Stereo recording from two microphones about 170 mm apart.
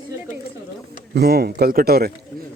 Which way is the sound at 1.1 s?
70° right (ahead or behind).